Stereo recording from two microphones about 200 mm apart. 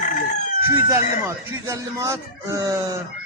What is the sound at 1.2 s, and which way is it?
Speech, 15° right (ahead or behind).